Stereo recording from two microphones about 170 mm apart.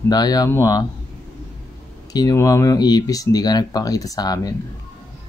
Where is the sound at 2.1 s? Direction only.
20° left (ahead or behind).